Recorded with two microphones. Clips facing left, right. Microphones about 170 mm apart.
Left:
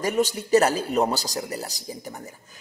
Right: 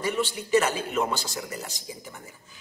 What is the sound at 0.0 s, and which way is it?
A man's voice, 40° left (ahead or behind).